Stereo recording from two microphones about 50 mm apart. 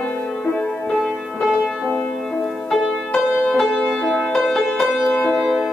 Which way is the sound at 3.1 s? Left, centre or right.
Centre.